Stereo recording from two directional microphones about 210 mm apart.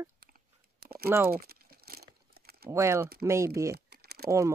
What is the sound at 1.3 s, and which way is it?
Crumpling, 45° right (ahead or behind).